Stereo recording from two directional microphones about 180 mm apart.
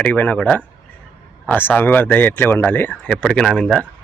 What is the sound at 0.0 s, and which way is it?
A man's voice, 10° left (ahead or behind).